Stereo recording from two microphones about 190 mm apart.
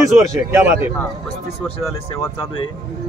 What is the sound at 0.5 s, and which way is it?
Speech, 15° right (ahead or behind).